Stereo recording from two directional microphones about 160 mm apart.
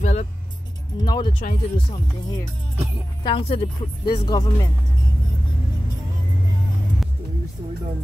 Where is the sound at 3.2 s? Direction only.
35° left (ahead or behind).